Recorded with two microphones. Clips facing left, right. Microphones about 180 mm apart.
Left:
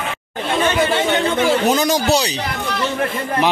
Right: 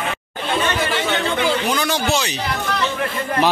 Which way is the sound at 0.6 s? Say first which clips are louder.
Left 7 dB; 25° left (ahead or behind).